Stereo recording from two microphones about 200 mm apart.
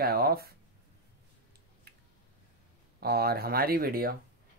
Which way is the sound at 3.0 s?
50° right (ahead or behind).